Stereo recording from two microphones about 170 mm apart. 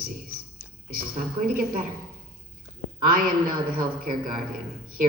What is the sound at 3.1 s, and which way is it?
A man's voice, 55° right (ahead or behind).